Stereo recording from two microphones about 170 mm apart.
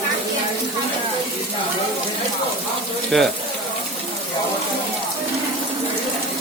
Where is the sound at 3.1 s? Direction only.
Centre (ahead or behind).